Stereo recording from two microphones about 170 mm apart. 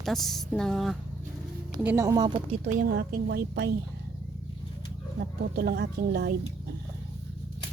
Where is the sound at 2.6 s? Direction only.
55° right (ahead or behind); by 3.8 s 80° right.